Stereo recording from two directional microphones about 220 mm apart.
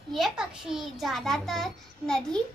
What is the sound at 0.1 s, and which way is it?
A child's voice, centre (ahead or behind).